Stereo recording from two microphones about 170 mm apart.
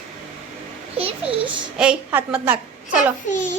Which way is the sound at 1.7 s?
5° right (ahead or behind).